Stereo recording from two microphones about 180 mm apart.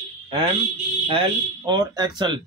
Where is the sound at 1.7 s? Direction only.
25° right (ahead or behind).